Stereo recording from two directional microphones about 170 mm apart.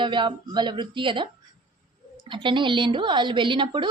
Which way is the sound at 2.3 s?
30° right (ahead or behind).